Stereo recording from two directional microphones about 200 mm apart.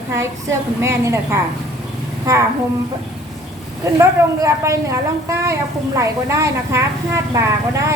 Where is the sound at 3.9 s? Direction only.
15° right (ahead or behind).